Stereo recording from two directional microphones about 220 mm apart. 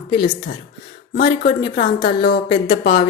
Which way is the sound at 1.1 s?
45° left (ahead or behind).